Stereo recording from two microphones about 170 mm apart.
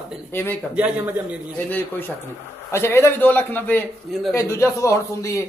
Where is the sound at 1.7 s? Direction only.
10° left (ahead or behind).